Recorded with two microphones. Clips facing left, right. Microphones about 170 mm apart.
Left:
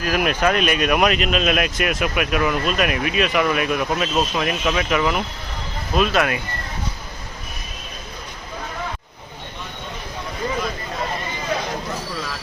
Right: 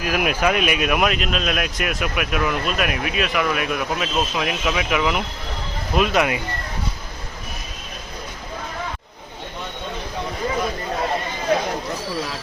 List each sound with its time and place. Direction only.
0.0 s speech: 10° right (ahead or behind)